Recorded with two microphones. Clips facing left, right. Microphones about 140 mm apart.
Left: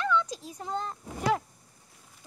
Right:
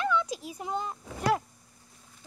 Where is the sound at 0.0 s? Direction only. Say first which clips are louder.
Even; 10° right (ahead or behind).